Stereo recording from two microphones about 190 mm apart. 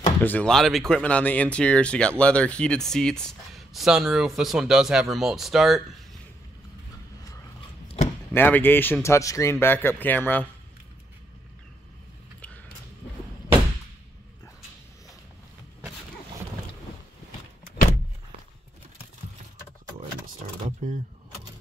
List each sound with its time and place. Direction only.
0.0 s speech: 10° left (ahead or behind)
8.3 s a man's voice: 10° left (ahead or behind)
20.8 s vehicle: 40° right (ahead or behind)